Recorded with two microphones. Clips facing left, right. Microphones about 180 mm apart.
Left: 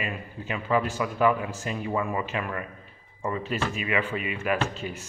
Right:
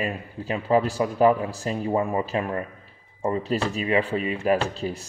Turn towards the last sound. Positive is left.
turn(degrees=-35)  # may be behind; listen again after turning